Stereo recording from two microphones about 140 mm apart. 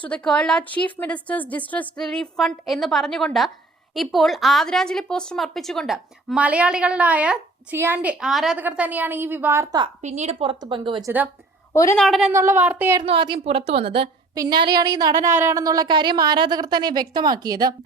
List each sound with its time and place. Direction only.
0.0 s a woman's voice: 5° left (ahead or behind); by 9.6 s 15° right (ahead or behind)
10.0 s a woman's voice: 55° right (ahead or behind); by 11.0 s 35° right (ahead or behind)
11.7 s a woman's voice: 20° left (ahead or behind)
11.9 s a woman's voice: centre (ahead or behind)
12.3 s a woman's voice: 20° right (ahead or behind)
13.0 s a woman's voice: 35° right (ahead or behind)
14.3 s a woman's voice: 30° right (ahead or behind)
15.3 s a woman's voice: 20° right (ahead or behind)